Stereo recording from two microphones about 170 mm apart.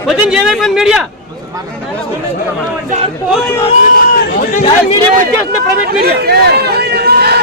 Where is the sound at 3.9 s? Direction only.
50° left (ahead or behind).